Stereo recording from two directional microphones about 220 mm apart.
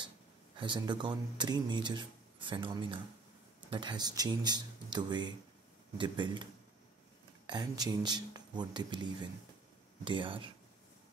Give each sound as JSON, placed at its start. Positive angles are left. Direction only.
{"t": 0.6, "sound": "speech", "side_deg": -20}